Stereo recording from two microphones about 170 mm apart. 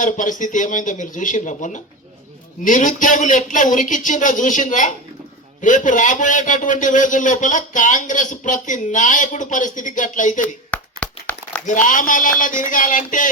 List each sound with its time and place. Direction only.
0.0 s a man's voice: 50° left (ahead or behind)
10.7 s a sound: 10° left (ahead or behind)
11.6 s a man's voice: 50° left (ahead or behind)